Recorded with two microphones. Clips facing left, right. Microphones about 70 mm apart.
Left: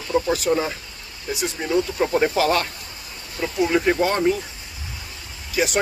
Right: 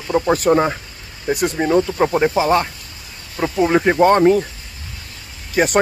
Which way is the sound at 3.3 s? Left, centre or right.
Right.